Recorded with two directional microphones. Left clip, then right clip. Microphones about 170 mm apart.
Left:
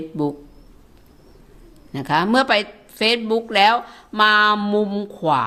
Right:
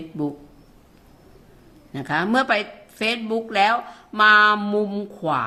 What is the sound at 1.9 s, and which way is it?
A woman's voice, 30° left (ahead or behind).